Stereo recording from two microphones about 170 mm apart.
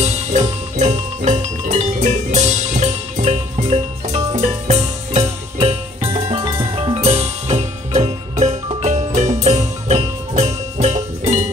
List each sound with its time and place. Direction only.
0.0 s music: 40° right (ahead or behind)